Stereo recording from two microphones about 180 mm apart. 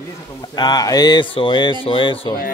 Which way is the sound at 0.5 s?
20° left (ahead or behind).